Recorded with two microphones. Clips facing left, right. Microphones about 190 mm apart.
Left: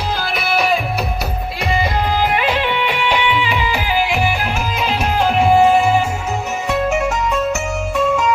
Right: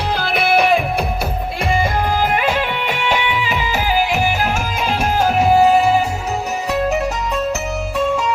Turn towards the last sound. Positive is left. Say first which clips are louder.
# left 1 dB
turn(degrees=-35)  # may be behind; listen again after turning